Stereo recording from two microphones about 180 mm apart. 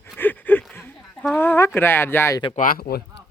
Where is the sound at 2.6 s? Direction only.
55° left (ahead or behind).